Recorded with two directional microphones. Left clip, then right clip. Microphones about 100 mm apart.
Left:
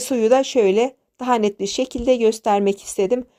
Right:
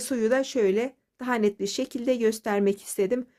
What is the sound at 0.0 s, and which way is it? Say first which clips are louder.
A woman's voice: left 8 dB; 35° left (ahead or behind).